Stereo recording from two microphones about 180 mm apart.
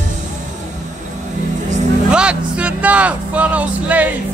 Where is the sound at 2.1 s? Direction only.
5° right (ahead or behind).